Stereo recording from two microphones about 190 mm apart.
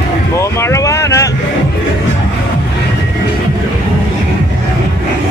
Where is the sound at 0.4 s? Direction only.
15° left (ahead or behind).